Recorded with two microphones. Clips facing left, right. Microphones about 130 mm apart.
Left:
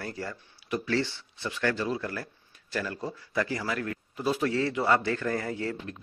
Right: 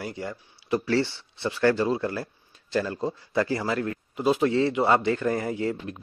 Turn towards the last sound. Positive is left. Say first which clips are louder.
# right 5 dB
turn(degrees=-20)  # may be behind; listen again after turning